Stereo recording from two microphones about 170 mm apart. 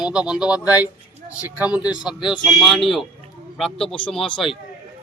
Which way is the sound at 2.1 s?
25° left (ahead or behind).